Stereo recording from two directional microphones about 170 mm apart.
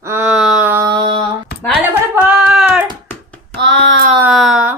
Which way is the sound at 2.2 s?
5° right (ahead or behind).